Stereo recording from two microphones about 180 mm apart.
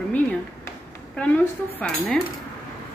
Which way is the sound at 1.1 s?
10° left (ahead or behind).